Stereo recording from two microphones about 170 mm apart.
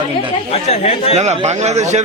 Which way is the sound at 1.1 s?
40° right (ahead or behind).